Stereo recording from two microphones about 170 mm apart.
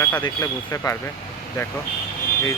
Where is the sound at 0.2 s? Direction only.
20° left (ahead or behind).